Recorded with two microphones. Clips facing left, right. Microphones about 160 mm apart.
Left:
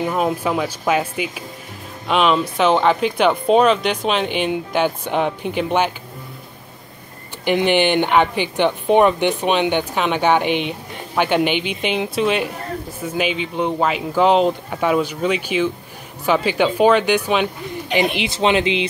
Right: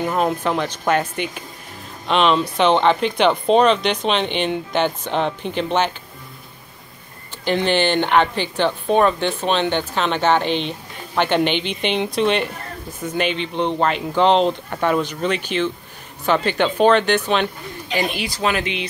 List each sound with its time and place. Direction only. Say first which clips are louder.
0.0 s speech: even; 5° left (ahead or behind)
7.4 s speech: left 2 dB; 15° left (ahead or behind)
17.9 s speech: left 3 dB; 20° left (ahead or behind)